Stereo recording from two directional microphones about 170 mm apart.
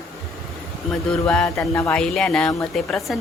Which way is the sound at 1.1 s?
5° left (ahead or behind).